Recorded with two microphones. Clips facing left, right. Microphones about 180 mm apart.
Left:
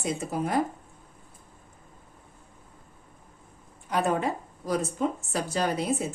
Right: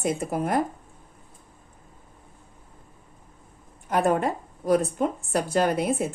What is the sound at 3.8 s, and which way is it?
A woman's voice, 50° right (ahead or behind).